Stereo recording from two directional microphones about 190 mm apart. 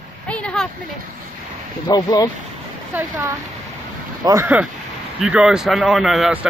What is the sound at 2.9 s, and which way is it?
A man's voice, 10° right (ahead or behind).